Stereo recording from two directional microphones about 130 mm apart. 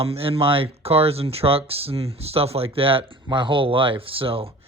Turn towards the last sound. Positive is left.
turn(degrees=-45)  # may be behind; listen again after turning